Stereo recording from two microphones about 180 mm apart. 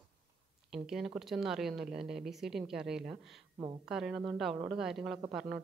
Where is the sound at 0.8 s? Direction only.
Centre (ahead or behind).